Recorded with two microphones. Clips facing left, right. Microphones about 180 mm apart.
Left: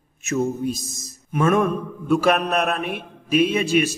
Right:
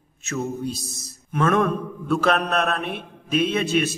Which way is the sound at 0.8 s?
65° right (ahead or behind).